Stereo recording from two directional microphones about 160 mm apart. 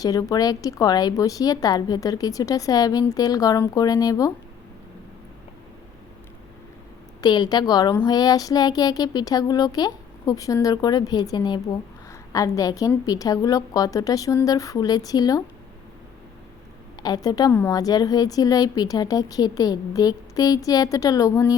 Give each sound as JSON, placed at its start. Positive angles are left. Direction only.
{"t": 0.0, "sound": "a woman's voice", "side_deg": 20}
{"t": 7.2, "sound": "a woman's voice", "side_deg": 25}
{"t": 17.0, "sound": "a woman's voice", "side_deg": 25}